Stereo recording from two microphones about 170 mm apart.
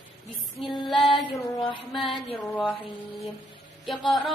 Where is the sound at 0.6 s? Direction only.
Centre (ahead or behind).